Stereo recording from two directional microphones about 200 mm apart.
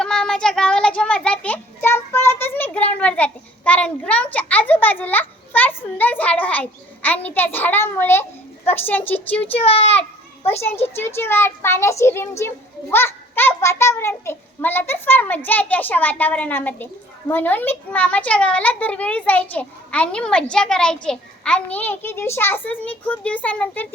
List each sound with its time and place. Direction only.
0.0 s a child's voice: 5° left (ahead or behind)
9.5 s a child's voice: 30° left (ahead or behind)
10.9 s a child's voice: 10° left (ahead or behind)